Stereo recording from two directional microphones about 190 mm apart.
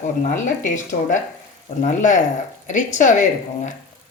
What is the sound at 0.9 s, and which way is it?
Speech, 40° left (ahead or behind).